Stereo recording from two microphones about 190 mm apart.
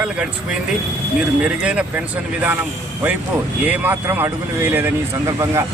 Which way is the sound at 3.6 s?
10° right (ahead or behind).